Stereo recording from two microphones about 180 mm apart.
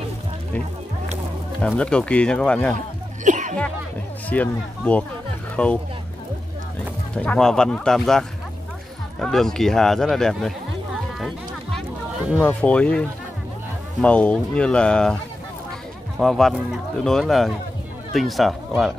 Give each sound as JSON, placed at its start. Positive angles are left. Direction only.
{"t": 1.8, "sound": "speech", "side_deg": 5}
{"t": 3.3, "sound": "music", "side_deg": -45}
{"t": 4.3, "sound": "speech", "side_deg": 10}
{"t": 7.2, "sound": "speech", "side_deg": 5}
{"t": 11.1, "sound": "music", "side_deg": 0}
{"t": 12.4, "sound": "speech", "side_deg": 5}
{"t": 14.0, "sound": "speech", "side_deg": 5}
{"t": 16.2, "sound": "speech", "side_deg": 0}